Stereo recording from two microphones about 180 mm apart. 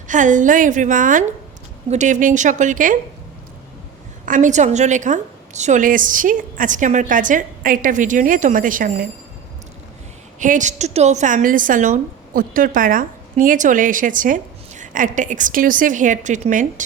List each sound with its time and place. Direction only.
0.1 s a woman's voice: 45° right (ahead or behind)
4.3 s a woman's voice: 45° right (ahead or behind)
10.4 s a woman's voice: 45° right (ahead or behind)